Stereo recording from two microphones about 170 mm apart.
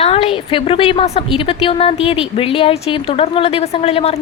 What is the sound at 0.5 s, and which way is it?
A woman's voice, 30° left (ahead or behind).